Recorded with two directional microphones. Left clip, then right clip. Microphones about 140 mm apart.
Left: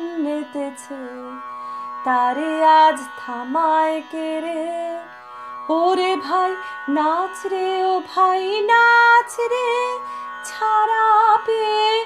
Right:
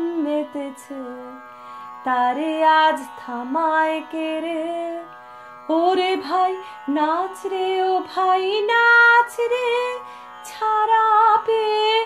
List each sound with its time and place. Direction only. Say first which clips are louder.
0.0 s music: right 2 dB; 50° left (ahead or behind)
2.0 s music: left 1 dB; 45° left (ahead or behind)
5.7 s music: left 1 dB; 45° left (ahead or behind)